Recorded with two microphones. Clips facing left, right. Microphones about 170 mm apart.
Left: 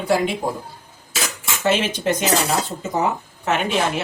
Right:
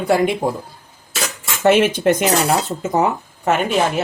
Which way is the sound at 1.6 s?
55° right (ahead or behind).